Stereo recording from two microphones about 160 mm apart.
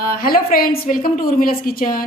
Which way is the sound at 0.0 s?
70° left (ahead or behind).